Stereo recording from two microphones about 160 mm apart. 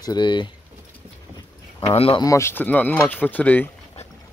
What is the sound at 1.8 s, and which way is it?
Speech, 35° left (ahead or behind).